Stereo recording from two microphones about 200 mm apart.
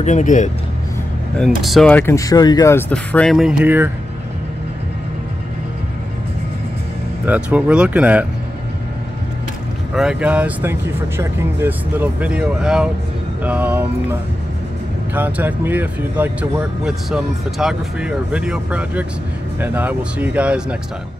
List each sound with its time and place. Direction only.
0.0 s speech: 40° left (ahead or behind)
1.6 s speech: centre (ahead or behind)
7.2 s speech: 5° right (ahead or behind)
9.9 s speech: 5° right (ahead or behind)
15.1 s speech: 10° right (ahead or behind)